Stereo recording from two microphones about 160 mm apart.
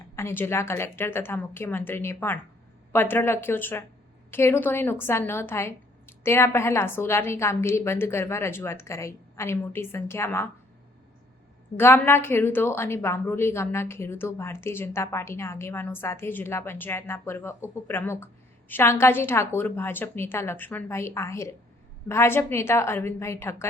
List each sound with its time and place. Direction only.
0.2 s a woman's voice: 15° left (ahead or behind)
11.8 s a woman's voice: 15° left (ahead or behind)